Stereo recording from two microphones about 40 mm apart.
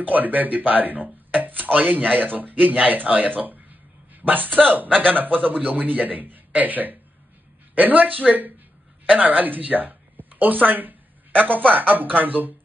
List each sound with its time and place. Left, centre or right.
0.0 s a woman's voice: right